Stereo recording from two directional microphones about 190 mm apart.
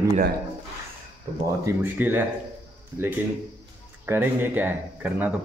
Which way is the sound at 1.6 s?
10° right (ahead or behind).